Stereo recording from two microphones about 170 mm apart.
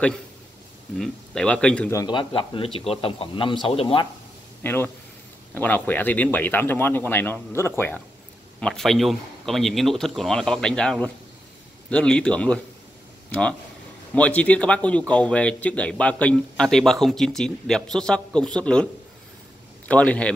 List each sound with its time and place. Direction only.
0.9 s speech: 5° left (ahead or behind)
1.9 s speech: 25° left (ahead or behind)
4.6 s speech: 10° left (ahead or behind)
19.9 s speech: 5° left (ahead or behind)